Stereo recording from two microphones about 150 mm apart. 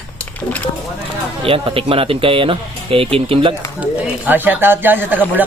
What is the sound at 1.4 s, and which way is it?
Speech, 40° right (ahead or behind).